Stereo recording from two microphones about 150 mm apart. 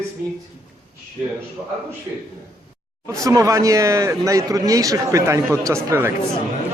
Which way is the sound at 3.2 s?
20° right (ahead or behind).